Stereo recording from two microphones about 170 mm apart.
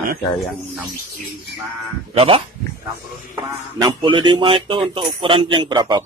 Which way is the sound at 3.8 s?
30° right (ahead or behind).